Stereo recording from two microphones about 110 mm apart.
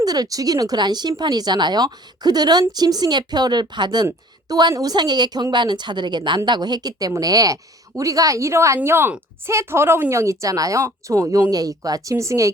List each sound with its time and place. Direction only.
0.0 s speech: 35° right (ahead or behind)